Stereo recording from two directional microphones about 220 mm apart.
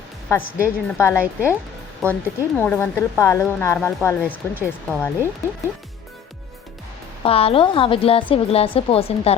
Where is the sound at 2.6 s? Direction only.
10° left (ahead or behind).